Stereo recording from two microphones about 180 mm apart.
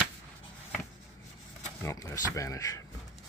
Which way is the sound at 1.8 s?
15° left (ahead or behind).